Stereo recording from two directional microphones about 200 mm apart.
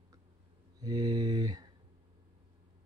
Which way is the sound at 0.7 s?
20° right (ahead or behind).